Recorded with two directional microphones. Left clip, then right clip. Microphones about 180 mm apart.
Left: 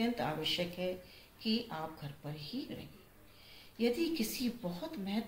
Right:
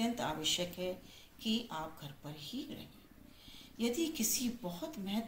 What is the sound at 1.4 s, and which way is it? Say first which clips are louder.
Speech: left 1 dB; 5° left (ahead or behind).